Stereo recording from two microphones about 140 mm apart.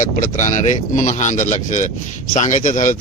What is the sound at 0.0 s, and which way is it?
A man's voice, 65° left (ahead or behind).